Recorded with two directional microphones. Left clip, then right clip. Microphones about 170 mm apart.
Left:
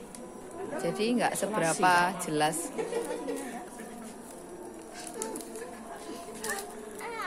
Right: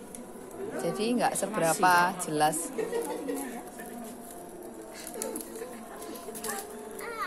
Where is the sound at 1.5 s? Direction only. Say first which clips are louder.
Right 1 dB; 25° left (ahead or behind).